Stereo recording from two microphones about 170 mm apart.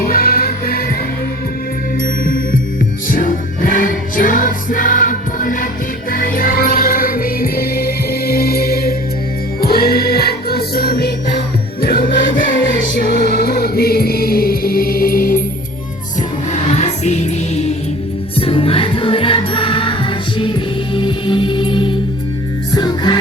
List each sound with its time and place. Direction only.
0.0 s music: 55° left (ahead or behind)
2.2 s music: 55° left (ahead or behind)
13.0 s music: 75° left (ahead or behind); by 15.4 s 55° left (ahead or behind)
16.5 s music: 45° left (ahead or behind); by 23.1 s 25° left (ahead or behind)